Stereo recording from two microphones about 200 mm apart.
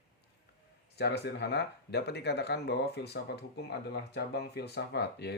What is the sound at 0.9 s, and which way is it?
Speech, 55° left (ahead or behind).